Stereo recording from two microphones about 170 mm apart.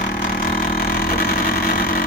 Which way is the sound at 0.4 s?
60° left (ahead or behind).